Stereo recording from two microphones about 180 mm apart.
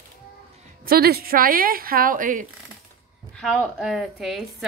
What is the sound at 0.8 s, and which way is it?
Speech, 55° right (ahead or behind).